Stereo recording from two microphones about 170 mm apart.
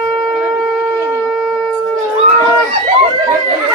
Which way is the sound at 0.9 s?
15° right (ahead or behind).